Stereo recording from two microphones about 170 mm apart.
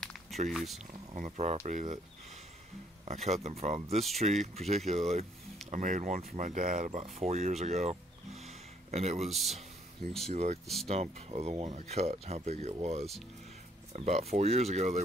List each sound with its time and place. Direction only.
0.5 s speech: centre (ahead or behind)
1.1 s speech: 45° right (ahead or behind)
3.1 s speech: 40° right (ahead or behind)
10.3 s speech: 40° right (ahead or behind)